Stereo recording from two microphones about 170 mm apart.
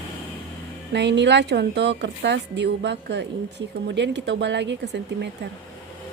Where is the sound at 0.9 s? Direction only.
90° right.